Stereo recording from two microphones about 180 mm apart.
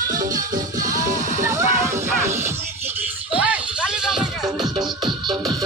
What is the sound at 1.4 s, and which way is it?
Music, 20° right (ahead or behind).